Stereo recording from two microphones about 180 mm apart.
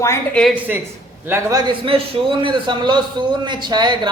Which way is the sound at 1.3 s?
20° right (ahead or behind).